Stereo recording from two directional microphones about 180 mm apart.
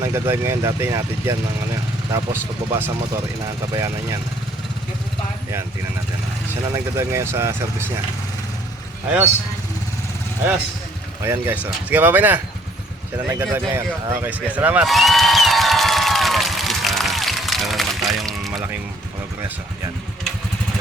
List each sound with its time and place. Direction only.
0.0 s speech: 15° right (ahead or behind)
6.5 s speech: 15° right (ahead or behind)
9.0 s speech: 10° right (ahead or behind)
11.2 s speech: 10° right (ahead or behind)
13.2 s a sound: 10° right (ahead or behind)